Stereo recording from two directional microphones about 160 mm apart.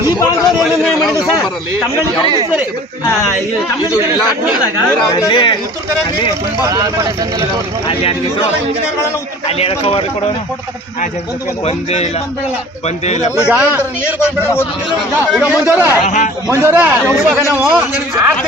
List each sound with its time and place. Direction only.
0.6 s a man's voice: centre (ahead or behind)
5.1 s speech: 30° left (ahead or behind)
6.7 s speech: 20° right (ahead or behind)
9.5 s speech: 40° left (ahead or behind)
11.6 s speech: 45° left (ahead or behind)
13.1 s speech: 45° left (ahead or behind)
13.5 s a man's voice: 10° right (ahead or behind)
14.0 s a man's voice: 15° left (ahead or behind)
14.8 s a man's voice: 5° right (ahead or behind)
16.0 s speech: 50° left (ahead or behind)
16.5 s a man's voice: 10° right (ahead or behind)